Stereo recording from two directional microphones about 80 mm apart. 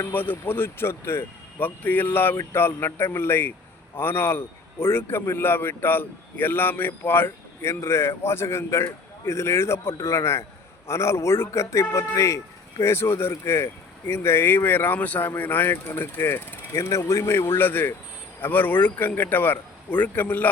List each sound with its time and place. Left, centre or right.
0.1 s a man's voice: left
16.7 s a man's voice: left